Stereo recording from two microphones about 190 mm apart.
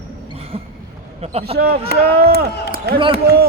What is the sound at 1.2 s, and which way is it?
Speech, 35° right (ahead or behind).